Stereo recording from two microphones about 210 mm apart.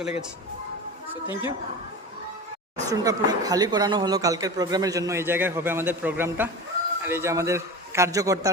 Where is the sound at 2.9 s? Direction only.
15° right (ahead or behind).